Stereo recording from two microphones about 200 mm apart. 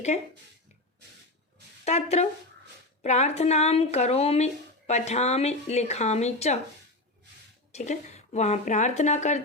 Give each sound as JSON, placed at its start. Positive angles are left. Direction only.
{"t": 1.8, "sound": "speech", "side_deg": 35}
{"t": 7.7, "sound": "speech", "side_deg": 35}